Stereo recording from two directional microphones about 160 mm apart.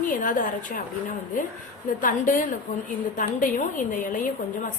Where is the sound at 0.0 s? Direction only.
55° left (ahead or behind).